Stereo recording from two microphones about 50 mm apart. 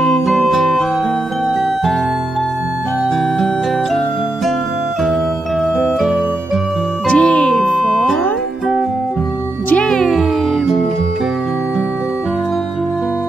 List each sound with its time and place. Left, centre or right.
0.3 s music: centre
7.1 s music: centre
7.5 s music: centre